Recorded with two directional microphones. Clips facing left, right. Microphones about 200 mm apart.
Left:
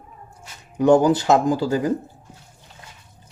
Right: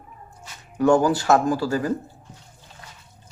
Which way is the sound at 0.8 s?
20° left (ahead or behind).